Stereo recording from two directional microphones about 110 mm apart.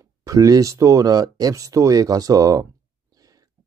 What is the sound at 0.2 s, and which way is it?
Speech, 30° right (ahead or behind).